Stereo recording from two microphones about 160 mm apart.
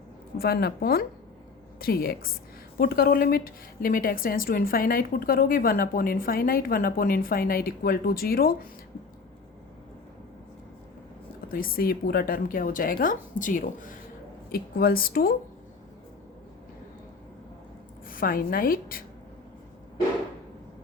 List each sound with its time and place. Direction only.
0.3 s speech: 75° left (ahead or behind)
11.4 s speech: 65° left (ahead or behind)
14.5 s speech: 70° left (ahead or behind)
18.1 s speech: 60° left (ahead or behind)